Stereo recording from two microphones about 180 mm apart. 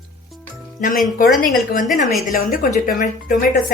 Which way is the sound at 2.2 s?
50° left (ahead or behind).